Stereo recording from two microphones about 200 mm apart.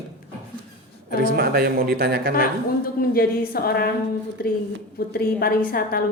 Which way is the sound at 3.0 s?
50° left (ahead or behind).